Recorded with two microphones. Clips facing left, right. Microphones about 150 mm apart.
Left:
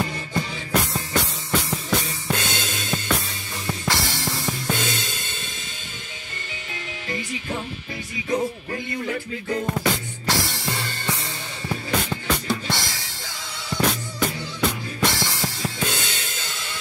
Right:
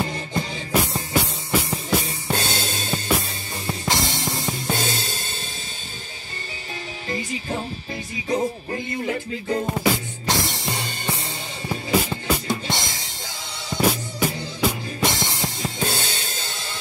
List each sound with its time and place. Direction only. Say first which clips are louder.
0.0 s music: even; 30° right (ahead or behind)
0.7 s music: right 3 dB; 10° right (ahead or behind)
2.0 s drum kit: right 1 dB; 30° right (ahead or behind)
3.6 s music: right 1 dB; 20° right (ahead or behind)
4.6 s music: right 2 dB; 35° right (ahead or behind)
7.1 s music: right 2 dB; 35° right (ahead or behind)
8.7 s music: right 2 dB; 25° right (ahead or behind)
9.7 s music: right 2 dB; 15° right (ahead or behind)
12.4 s music: even; 20° right (ahead or behind)
13.7 s music: right 2 dB; 10° right (ahead or behind)
15.0 s music: even; 20° right (ahead or behind)
15.8 s music: right 4 dB; 35° right (ahead or behind)